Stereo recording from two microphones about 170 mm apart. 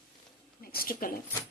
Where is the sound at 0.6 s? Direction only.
60° left (ahead or behind).